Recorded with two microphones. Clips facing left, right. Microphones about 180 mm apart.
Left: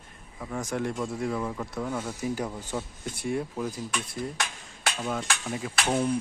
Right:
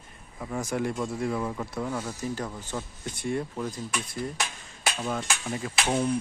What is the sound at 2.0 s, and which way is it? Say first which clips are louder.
Speech: left 2 dB; 10° left (ahead or behind).